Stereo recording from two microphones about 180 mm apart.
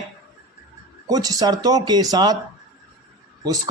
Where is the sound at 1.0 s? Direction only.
20° right (ahead or behind).